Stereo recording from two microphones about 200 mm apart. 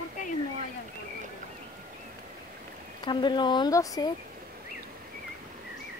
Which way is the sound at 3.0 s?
25° left (ahead or behind).